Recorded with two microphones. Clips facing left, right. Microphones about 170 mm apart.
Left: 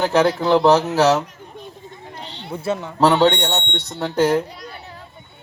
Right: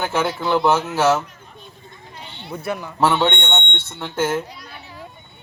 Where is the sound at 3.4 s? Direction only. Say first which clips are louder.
Left 3 dB; 40° left (ahead or behind).